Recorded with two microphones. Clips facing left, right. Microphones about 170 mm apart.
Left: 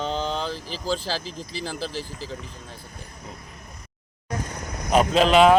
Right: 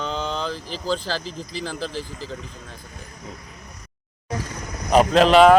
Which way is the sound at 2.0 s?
40° left (ahead or behind).